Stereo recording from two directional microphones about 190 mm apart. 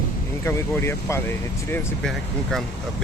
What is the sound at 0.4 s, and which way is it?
Speech, 15° left (ahead or behind).